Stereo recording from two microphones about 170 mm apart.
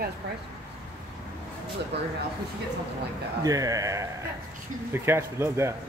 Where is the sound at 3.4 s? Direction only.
20° right (ahead or behind).